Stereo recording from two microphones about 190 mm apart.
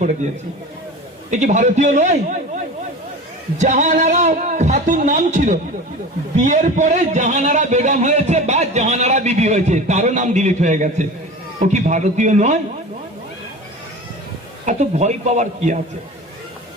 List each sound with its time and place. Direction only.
1.3 s a man's voice: 40° right (ahead or behind)
3.6 s a man's voice: 40° right (ahead or behind)
14.6 s a man's voice: 40° right (ahead or behind)